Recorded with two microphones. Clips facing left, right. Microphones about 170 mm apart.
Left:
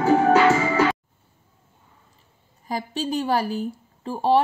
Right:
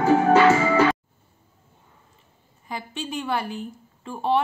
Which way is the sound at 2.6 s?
35° left (ahead or behind).